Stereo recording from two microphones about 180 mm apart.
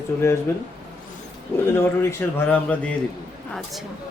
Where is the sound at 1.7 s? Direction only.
15° left (ahead or behind).